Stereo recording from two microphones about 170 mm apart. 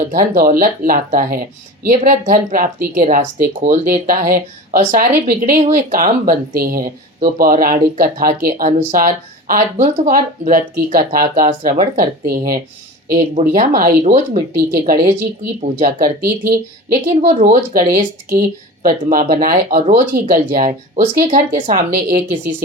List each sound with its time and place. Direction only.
0.0 s speech: 55° right (ahead or behind)
14.0 s speech: 40° right (ahead or behind)
14.5 s speech: 55° right (ahead or behind)
17.2 s speech: 45° right (ahead or behind)